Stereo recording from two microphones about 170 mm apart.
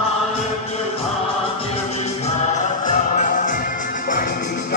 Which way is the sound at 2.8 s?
45° left (ahead or behind).